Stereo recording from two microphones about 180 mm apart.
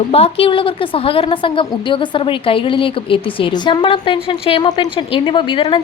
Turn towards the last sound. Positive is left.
turn(degrees=30)  # may be behind; listen again after turning